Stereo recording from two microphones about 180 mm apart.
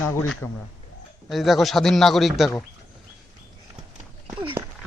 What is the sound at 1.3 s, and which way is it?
Speech, centre (ahead or behind).